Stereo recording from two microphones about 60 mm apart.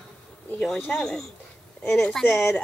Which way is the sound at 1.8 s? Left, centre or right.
Left.